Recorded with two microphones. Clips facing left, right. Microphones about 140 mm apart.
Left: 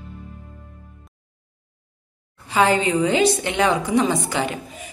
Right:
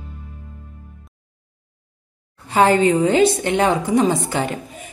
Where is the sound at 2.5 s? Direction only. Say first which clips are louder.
Right 4 dB; 45° right (ahead or behind).